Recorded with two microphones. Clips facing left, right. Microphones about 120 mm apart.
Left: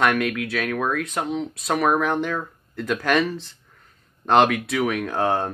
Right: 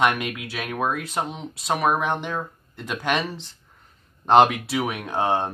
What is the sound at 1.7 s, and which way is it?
Speech, 5° right (ahead or behind).